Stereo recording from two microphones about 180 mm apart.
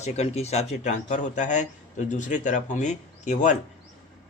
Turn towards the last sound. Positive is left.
turn(degrees=45)  # may be behind; listen again after turning